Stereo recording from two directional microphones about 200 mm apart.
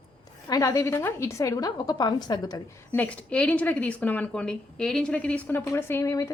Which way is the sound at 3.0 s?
5° left (ahead or behind).